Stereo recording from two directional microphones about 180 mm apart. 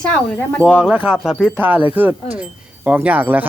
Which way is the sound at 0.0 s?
5° left (ahead or behind).